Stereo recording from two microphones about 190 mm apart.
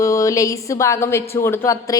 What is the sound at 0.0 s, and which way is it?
A woman's voice, 15° left (ahead or behind).